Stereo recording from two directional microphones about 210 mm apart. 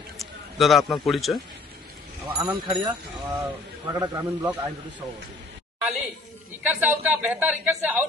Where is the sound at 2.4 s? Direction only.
20° right (ahead or behind).